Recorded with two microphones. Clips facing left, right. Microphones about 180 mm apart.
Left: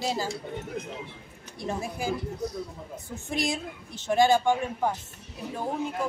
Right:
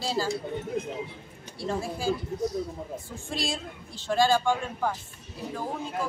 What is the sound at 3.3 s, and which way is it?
A woman's voice, 20° left (ahead or behind).